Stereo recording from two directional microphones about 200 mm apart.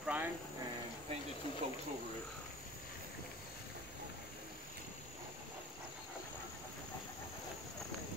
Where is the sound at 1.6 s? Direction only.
30° right (ahead or behind).